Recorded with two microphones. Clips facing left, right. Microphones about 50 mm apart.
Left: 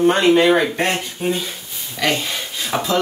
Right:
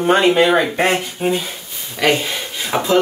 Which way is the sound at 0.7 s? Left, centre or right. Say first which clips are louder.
Right 4 dB; centre.